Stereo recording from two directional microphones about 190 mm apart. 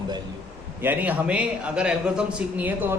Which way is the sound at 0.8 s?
10° right (ahead or behind).